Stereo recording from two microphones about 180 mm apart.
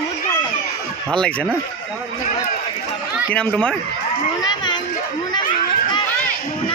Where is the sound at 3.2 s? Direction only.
5° left (ahead or behind).